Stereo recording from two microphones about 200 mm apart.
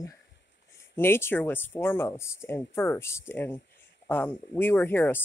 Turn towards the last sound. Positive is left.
turn(degrees=10)  # may be behind; listen again after turning